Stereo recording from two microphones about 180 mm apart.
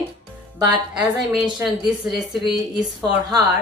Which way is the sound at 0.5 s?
20° right (ahead or behind).